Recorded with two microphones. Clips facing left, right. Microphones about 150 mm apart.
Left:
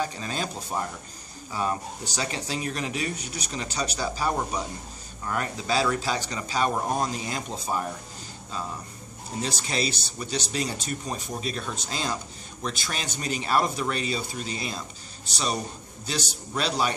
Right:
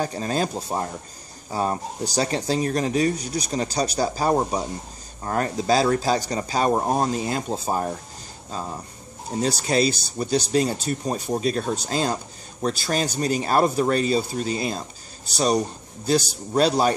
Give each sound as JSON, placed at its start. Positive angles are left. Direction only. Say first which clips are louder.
{"t": 0.0, "sound": "speech", "louder": "right 6 dB", "side_deg": -40}
{"t": 9.4, "sound": "speech", "louder": "right 8 dB", "side_deg": -40}